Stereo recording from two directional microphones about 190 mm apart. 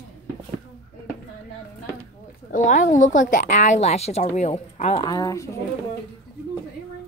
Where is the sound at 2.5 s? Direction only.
40° left (ahead or behind).